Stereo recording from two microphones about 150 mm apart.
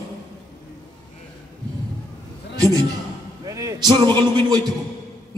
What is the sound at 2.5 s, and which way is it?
A man's voice, 25° right (ahead or behind).